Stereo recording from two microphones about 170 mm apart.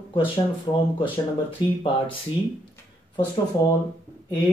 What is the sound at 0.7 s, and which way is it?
Speech, 30° left (ahead or behind).